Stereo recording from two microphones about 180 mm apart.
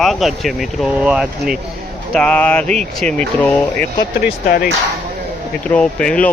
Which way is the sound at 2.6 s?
40° right (ahead or behind).